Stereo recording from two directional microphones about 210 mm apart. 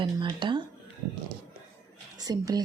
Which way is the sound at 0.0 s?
20° right (ahead or behind).